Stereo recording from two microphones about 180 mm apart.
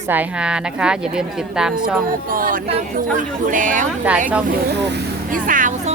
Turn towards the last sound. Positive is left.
turn(degrees=-45)  # may be behind; listen again after turning